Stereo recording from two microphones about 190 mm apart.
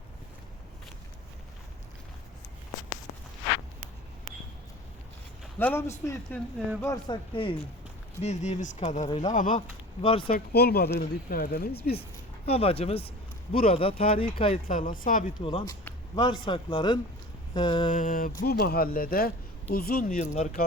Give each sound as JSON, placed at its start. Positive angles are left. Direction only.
{"t": 5.5, "sound": "a man's voice", "side_deg": 10}
{"t": 8.2, "sound": "speech", "side_deg": 35}
{"t": 9.0, "sound": "a man's voice", "side_deg": 25}
{"t": 10.3, "sound": "speech", "side_deg": 55}
{"t": 12.5, "sound": "a man's voice", "side_deg": 30}
{"t": 14.7, "sound": "speech", "side_deg": 45}
{"t": 15.4, "sound": "a man's voice", "side_deg": 25}
{"t": 17.9, "sound": "speech", "side_deg": 45}